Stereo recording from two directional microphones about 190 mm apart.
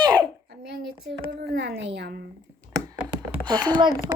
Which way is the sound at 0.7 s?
60° right (ahead or behind).